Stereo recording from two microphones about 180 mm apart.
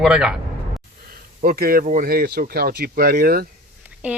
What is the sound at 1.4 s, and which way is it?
Speech, 55° right (ahead or behind).